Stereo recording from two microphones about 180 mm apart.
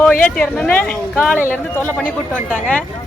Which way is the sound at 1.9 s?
Centre (ahead or behind).